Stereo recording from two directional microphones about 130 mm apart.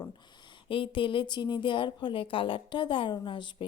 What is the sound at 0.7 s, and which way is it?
A woman's voice, 40° left (ahead or behind).